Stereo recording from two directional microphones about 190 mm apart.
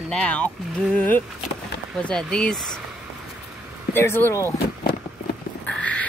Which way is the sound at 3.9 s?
10° left (ahead or behind).